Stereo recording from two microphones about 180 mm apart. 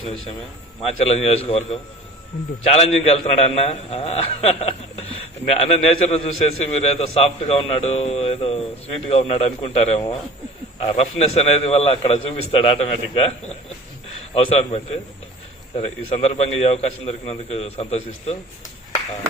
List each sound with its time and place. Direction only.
1.0 s a man's voice: 35° left (ahead or behind)
14.3 s a man's voice: 30° left (ahead or behind)